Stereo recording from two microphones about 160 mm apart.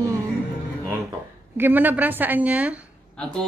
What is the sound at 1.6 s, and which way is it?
A woman's voice, 10° right (ahead or behind).